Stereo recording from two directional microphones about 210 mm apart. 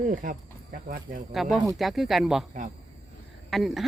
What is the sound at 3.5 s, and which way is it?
Speech, centre (ahead or behind).